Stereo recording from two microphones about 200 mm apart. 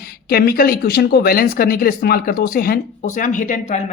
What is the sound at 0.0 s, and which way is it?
Speech, 50° left (ahead or behind).